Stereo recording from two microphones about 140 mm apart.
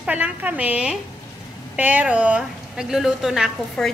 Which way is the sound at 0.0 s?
10° right (ahead or behind).